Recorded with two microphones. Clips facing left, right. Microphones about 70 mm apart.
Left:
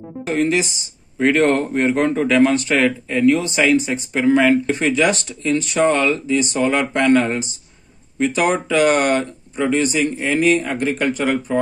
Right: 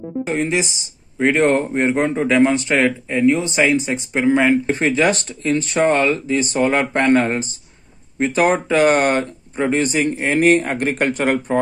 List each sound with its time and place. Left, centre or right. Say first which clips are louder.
0.4 s speech: left 5 dB; right